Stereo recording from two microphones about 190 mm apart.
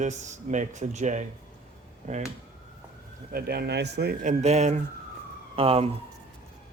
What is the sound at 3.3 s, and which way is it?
Speech, 55° right (ahead or behind).